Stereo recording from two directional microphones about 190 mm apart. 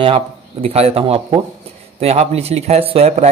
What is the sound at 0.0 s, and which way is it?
Speech, 30° right (ahead or behind).